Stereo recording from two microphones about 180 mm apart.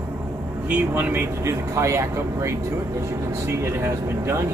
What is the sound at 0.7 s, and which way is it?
Speech, 10° right (ahead or behind).